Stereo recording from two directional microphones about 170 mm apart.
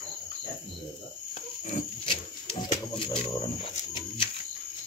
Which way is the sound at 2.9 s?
30° left (ahead or behind).